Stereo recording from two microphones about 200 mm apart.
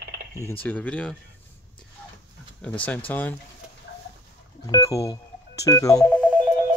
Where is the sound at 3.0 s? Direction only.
10° left (ahead or behind).